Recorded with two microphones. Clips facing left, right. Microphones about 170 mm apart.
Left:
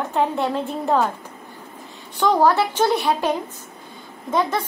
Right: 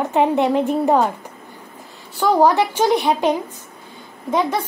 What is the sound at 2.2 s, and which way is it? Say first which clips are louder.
A woman's voice: right 2 dB; 10° right (ahead or behind).